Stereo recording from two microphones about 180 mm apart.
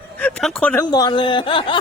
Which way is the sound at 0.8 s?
25° left (ahead or behind).